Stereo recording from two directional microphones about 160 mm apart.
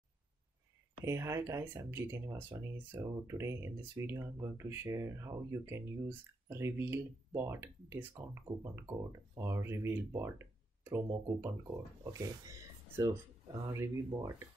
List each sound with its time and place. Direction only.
1.0 s speech: 15° right (ahead or behind)